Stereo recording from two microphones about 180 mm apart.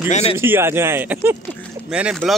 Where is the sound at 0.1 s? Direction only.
35° left (ahead or behind).